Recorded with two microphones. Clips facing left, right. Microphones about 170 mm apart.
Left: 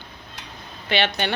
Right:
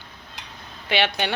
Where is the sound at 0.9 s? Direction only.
10° right (ahead or behind).